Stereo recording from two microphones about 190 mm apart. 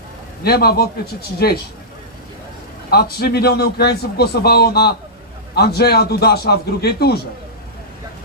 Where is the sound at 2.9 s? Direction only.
55° left (ahead or behind).